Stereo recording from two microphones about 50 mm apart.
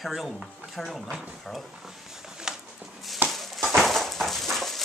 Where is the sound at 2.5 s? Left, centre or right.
Centre.